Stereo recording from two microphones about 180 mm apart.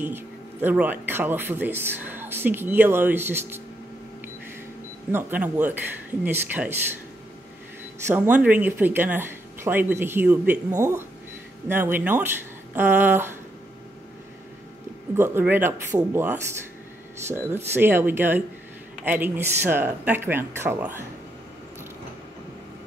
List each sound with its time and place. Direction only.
0.0 s speech: 10° right (ahead or behind)
5.1 s speech: 10° right (ahead or behind)
8.1 s speech: 10° right (ahead or behind)
15.1 s speech: 10° right (ahead or behind)